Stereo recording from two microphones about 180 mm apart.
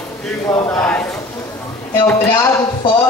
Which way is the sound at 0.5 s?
5° left (ahead or behind).